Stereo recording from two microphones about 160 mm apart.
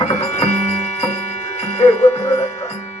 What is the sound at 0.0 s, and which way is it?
Music, 45° left (ahead or behind).